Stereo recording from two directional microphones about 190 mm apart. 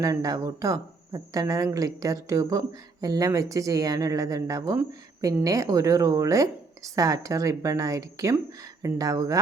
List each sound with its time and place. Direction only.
0.0 s speech: 20° right (ahead or behind)